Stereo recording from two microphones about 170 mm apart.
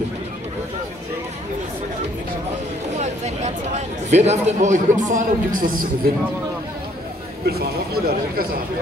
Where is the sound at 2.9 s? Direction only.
40° right (ahead or behind).